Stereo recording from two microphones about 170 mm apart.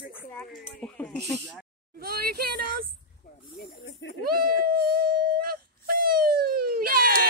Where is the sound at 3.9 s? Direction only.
90° left.